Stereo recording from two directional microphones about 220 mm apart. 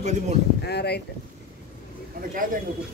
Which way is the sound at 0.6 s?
50° left (ahead or behind).